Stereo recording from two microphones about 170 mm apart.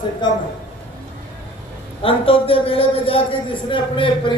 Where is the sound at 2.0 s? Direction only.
35° left (ahead or behind).